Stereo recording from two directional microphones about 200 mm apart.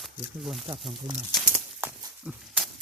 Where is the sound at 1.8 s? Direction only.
10° right (ahead or behind).